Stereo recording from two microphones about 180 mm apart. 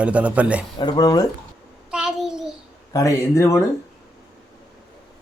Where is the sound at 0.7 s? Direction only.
25° left (ahead or behind).